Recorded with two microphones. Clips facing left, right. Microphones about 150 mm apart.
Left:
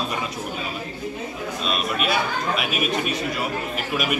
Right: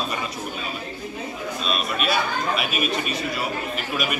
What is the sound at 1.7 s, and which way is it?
Speech, 15° left (ahead or behind).